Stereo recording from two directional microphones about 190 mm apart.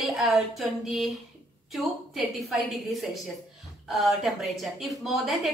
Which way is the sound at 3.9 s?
Centre (ahead or behind).